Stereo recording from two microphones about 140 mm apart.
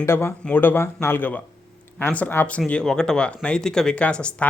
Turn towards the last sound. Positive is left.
turn(degrees=10)  # may be behind; listen again after turning